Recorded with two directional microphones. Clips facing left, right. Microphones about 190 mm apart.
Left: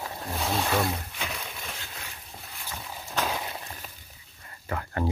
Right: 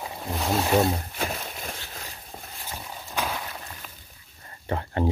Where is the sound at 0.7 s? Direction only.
25° right (ahead or behind).